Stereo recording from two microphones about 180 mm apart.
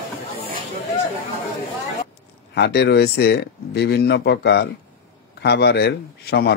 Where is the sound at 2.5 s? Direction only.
70° left (ahead or behind).